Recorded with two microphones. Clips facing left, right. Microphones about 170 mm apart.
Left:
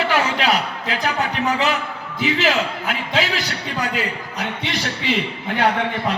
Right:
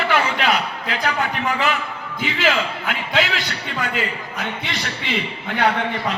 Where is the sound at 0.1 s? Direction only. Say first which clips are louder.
Even; 40° left (ahead or behind).